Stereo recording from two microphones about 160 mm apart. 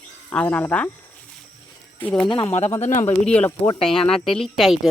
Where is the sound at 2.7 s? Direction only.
45° left (ahead or behind).